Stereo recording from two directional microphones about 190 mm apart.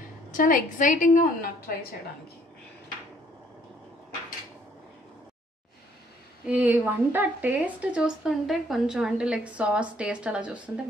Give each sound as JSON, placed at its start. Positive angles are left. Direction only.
{"t": 0.3, "sound": "a woman's voice", "side_deg": 45}
{"t": 6.4, "sound": "speech", "side_deg": -5}